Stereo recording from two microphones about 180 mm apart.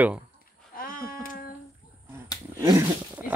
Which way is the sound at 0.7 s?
50° left (ahead or behind).